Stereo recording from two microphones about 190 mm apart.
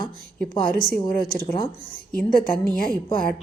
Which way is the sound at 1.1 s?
50° left (ahead or behind).